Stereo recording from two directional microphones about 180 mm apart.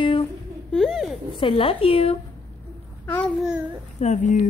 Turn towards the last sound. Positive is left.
turn(degrees=45)  # may be behind; listen again after turning